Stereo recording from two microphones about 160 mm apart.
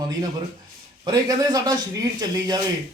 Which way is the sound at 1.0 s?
25° right (ahead or behind).